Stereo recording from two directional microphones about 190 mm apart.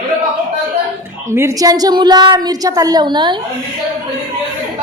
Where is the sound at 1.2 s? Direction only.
15° right (ahead or behind).